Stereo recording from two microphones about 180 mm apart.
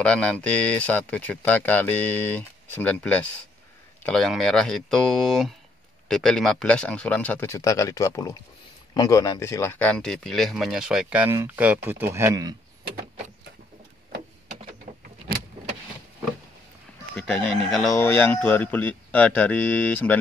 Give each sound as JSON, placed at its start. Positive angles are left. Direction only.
{"t": 0.0, "sound": "speech", "side_deg": 5}
{"t": 14.9, "sound": "vehicle", "side_deg": -40}
{"t": 17.1, "sound": "speech", "side_deg": 5}
{"t": 17.9, "sound": "speech", "side_deg": 10}